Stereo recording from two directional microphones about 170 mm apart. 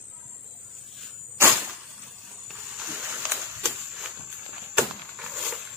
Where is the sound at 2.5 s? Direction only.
5° right (ahead or behind).